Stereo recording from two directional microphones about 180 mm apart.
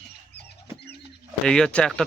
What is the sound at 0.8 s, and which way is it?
Rodents, 65° left (ahead or behind).